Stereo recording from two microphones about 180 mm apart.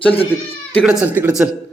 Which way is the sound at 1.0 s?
10° right (ahead or behind).